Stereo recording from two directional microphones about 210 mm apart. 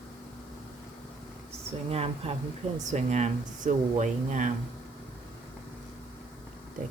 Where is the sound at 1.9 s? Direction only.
30° right (ahead or behind).